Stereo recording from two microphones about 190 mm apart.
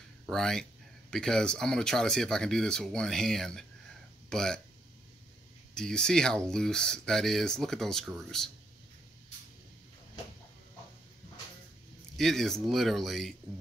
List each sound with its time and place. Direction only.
0.3 s speech: 5° left (ahead or behind)
5.8 s speech: 5° left (ahead or behind)
12.2 s speech: centre (ahead or behind)